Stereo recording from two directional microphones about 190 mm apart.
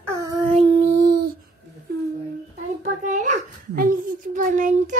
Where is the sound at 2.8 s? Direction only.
40° right (ahead or behind).